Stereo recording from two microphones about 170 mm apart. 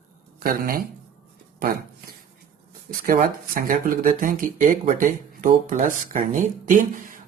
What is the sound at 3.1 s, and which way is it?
Speech, 55° right (ahead or behind).